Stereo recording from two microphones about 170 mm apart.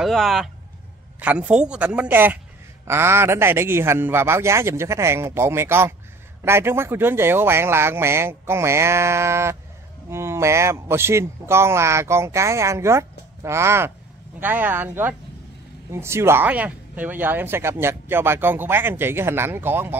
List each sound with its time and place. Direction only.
0.0 s a woman's voice: centre (ahead or behind)